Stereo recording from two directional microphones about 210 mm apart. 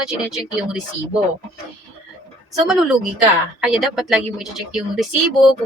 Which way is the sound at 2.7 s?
5° right (ahead or behind).